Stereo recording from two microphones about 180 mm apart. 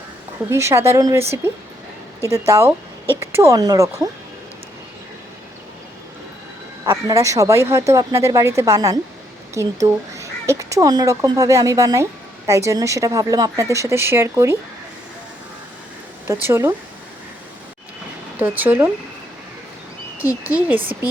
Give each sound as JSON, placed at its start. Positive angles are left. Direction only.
{"t": 0.5, "sound": "speech", "side_deg": -15}
{"t": 2.5, "sound": "speech", "side_deg": -15}
{"t": 6.9, "sound": "speech", "side_deg": -20}
{"t": 16.2, "sound": "speech", "side_deg": -15}
{"t": 18.3, "sound": "speech", "side_deg": -10}
{"t": 20.1, "sound": "speech", "side_deg": -10}